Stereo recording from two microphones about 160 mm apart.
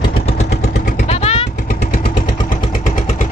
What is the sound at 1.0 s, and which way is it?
Vehicle, 40° left (ahead or behind).